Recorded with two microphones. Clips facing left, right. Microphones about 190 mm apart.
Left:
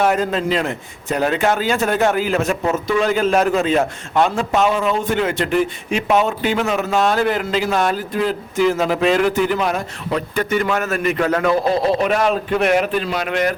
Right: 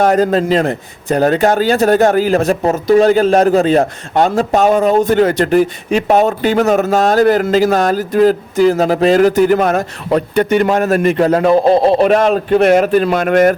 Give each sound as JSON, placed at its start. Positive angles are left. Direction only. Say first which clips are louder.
{"t": 0.0, "sound": "a man's voice", "louder": "right 6 dB", "side_deg": -40}
{"t": 10.6, "sound": "a man's voice", "louder": "right 7 dB", "side_deg": -35}